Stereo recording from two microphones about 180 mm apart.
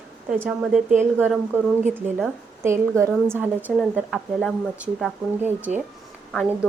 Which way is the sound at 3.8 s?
Centre (ahead or behind).